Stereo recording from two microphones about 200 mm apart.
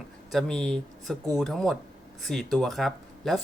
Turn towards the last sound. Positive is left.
turn(degrees=0)  # may be behind; listen again after turning